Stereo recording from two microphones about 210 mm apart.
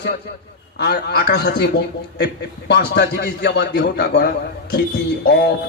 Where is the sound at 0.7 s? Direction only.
50° left (ahead or behind).